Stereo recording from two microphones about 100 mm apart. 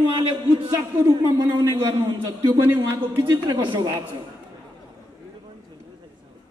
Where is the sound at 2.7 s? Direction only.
60° right (ahead or behind).